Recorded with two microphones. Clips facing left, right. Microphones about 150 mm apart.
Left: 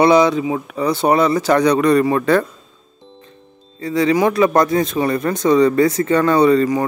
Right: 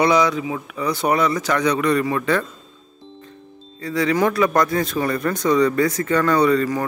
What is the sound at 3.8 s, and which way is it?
Speech, 25° left (ahead or behind).